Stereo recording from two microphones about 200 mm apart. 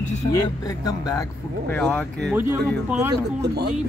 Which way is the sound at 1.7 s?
5° left (ahead or behind).